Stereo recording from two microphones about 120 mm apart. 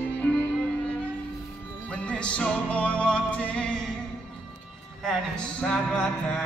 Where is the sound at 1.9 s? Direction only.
10° left (ahead or behind).